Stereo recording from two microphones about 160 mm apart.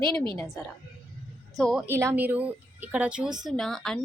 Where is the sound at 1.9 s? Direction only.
15° right (ahead or behind).